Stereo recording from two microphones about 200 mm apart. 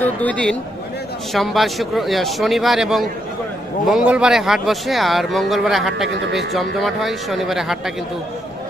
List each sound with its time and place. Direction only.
0.0 s a man's voice: 5° left (ahead or behind)